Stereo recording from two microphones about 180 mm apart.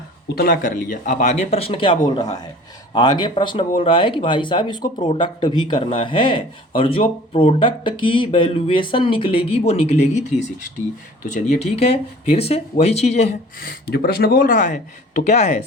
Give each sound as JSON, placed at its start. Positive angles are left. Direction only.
{"t": 0.3, "sound": "speech", "side_deg": 55}
{"t": 12.3, "sound": "speech", "side_deg": 35}